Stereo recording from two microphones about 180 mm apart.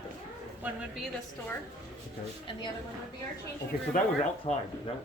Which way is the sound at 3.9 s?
45° left (ahead or behind).